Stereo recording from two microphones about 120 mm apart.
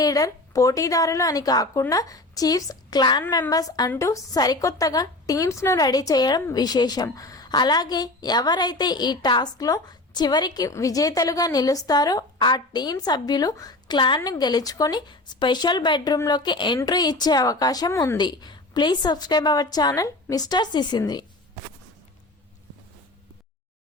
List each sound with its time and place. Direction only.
0.0 s a woman's voice: 30° left (ahead or behind)
18.2 s a woman's voice: 40° left (ahead or behind)